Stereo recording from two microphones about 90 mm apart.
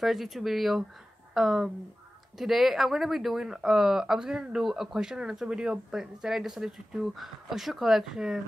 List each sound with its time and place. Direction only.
0.0 s speech: centre (ahead or behind)